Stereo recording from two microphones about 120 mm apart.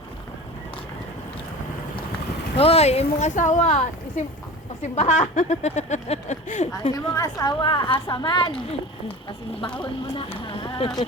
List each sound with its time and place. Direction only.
2.6 s speech: 55° left (ahead or behind); by 6.7 s 75° left (ahead or behind)
6.9 s a woman's voice: 30° left (ahead or behind)
7.6 s a woman's voice: 45° left (ahead or behind)
10.2 s speech: 45° left (ahead or behind)